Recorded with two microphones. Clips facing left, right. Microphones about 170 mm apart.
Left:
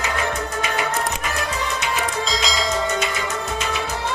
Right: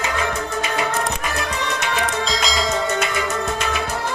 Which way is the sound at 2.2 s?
Centre (ahead or behind).